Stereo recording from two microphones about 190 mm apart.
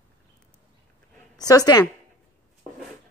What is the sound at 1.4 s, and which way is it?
Speech, 20° left (ahead or behind).